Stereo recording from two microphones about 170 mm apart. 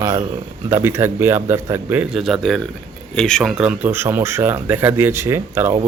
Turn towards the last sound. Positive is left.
turn(degrees=-15)  # may be behind; listen again after turning